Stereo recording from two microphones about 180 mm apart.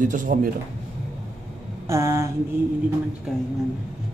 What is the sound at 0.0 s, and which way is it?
Speech, 45° right (ahead or behind).